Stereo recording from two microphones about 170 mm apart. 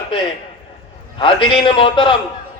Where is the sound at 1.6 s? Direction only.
30° left (ahead or behind).